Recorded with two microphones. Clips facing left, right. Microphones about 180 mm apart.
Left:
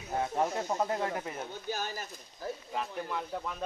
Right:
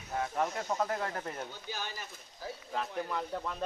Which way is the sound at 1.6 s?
45° left (ahead or behind).